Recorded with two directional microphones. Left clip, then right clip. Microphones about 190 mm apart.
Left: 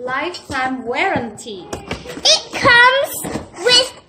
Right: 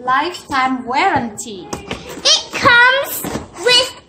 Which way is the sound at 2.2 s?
5° left (ahead or behind).